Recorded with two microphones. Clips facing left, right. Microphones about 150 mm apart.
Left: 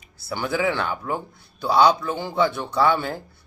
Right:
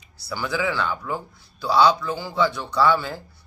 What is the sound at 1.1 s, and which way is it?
A man's voice, 20° left (ahead or behind).